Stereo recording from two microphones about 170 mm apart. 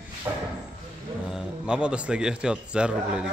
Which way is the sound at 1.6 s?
5° right (ahead or behind).